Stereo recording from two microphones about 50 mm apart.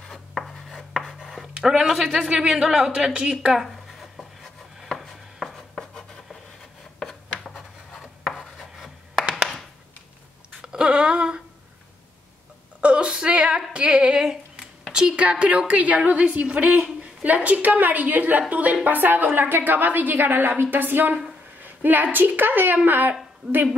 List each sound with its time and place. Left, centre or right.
0.1 s chopping: centre
1.5 s a woman's voice: centre
4.8 s chopping: centre
7.9 s chopping: centre
10.6 s a sound: centre
12.8 s a sound: centre
18.5 s a woman's voice: right